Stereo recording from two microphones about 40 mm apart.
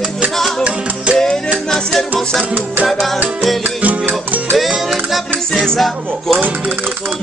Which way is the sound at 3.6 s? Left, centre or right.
Right.